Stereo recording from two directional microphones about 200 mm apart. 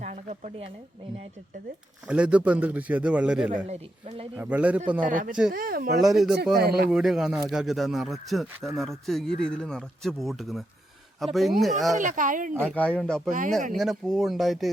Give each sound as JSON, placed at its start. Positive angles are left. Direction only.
{"t": 0.0, "sound": "a sound", "side_deg": -35}
{"t": 2.0, "sound": "a man's voice", "side_deg": -5}
{"t": 3.7, "sound": "speech", "side_deg": -30}
{"t": 4.4, "sound": "a man's voice", "side_deg": -5}
{"t": 4.9, "sound": "a man's voice", "side_deg": -40}
{"t": 6.0, "sound": "speech", "side_deg": 0}
{"t": 6.3, "sound": "a man's voice", "side_deg": -50}
{"t": 6.9, "sound": "speech", "side_deg": 0}
{"t": 11.9, "sound": "speech", "side_deg": -40}
{"t": 12.7, "sound": "speech", "side_deg": 5}